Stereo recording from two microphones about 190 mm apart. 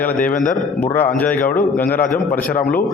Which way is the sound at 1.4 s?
45° left (ahead or behind).